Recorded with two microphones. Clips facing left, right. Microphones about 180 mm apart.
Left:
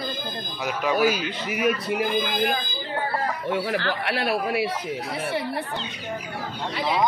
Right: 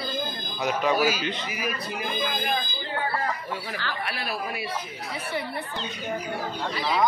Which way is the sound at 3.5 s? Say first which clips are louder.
Left 8 dB; 70° left (ahead or behind).